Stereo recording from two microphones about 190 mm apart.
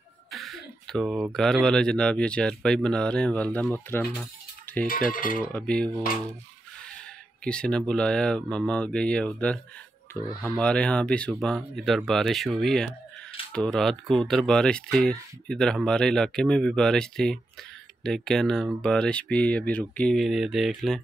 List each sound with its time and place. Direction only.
0.3 s speech: centre (ahead or behind)
4.2 s dishes: 10° left (ahead or behind)
5.1 s cutlery: 45° left (ahead or behind)
5.5 s speech: 5° left (ahead or behind)
7.4 s speech: 5° left (ahead or behind)
10.6 s speech: 5° left (ahead or behind)